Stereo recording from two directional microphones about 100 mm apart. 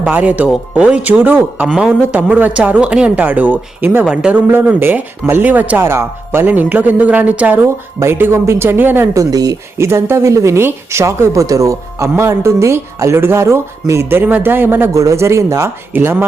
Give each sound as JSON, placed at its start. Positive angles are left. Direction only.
{"t": 0.0, "sound": "speech", "side_deg": -15}
{"t": 7.9, "sound": "speech", "side_deg": -25}
{"t": 9.1, "sound": "speech", "side_deg": -40}
{"t": 9.7, "sound": "speech", "side_deg": -25}